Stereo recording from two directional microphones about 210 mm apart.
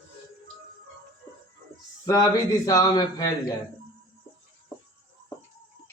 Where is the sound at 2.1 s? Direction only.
20° left (ahead or behind).